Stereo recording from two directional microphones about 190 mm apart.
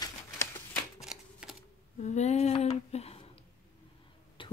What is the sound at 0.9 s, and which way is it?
Shuffling cards, centre (ahead or behind).